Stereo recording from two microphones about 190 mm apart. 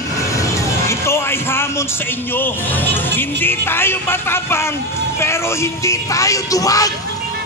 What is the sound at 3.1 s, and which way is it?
Speech, 10° left (ahead or behind).